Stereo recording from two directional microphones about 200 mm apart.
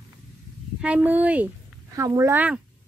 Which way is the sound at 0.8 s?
5° right (ahead or behind).